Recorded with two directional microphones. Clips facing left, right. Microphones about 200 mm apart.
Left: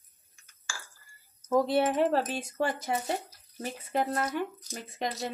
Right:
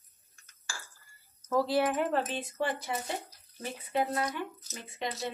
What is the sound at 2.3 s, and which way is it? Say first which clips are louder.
Speech: left 2 dB; 45° left (ahead or behind).